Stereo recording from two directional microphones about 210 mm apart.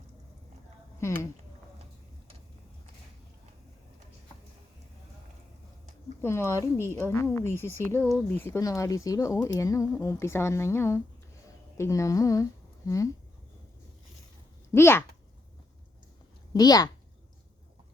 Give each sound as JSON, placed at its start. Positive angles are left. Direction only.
{"t": 0.9, "sound": "speech", "side_deg": 15}
{"t": 6.2, "sound": "speech", "side_deg": 10}
{"t": 14.7, "sound": "speech", "side_deg": 10}
{"t": 16.5, "sound": "speech", "side_deg": 20}